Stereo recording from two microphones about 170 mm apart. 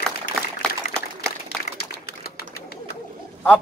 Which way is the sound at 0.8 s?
40° left (ahead or behind).